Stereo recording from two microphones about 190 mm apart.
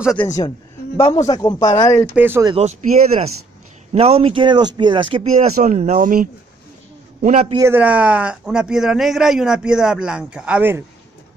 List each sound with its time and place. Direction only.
0.2 s a woman's voice: 15° left (ahead or behind)
2.1 s speech: 10° right (ahead or behind)
2.4 s a man's voice: 35° right (ahead or behind)
7.5 s speech: 10° right (ahead or behind)